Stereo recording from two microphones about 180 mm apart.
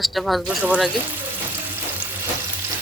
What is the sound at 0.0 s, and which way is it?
Speech, centre (ahead or behind).